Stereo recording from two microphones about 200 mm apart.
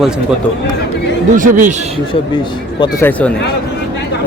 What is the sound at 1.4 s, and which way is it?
Speech, 40° right (ahead or behind).